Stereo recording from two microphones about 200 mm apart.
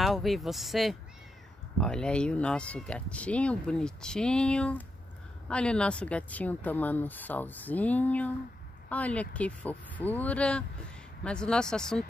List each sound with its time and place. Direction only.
0.0 s a woman's voice: centre (ahead or behind)